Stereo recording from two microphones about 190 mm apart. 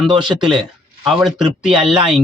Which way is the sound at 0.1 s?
25° right (ahead or behind).